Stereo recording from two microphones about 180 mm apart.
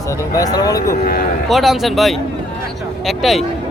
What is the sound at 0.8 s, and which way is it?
Speech, 55° left (ahead or behind).